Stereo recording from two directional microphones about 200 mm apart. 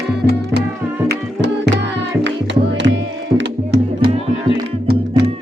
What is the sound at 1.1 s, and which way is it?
Music, 60° right (ahead or behind).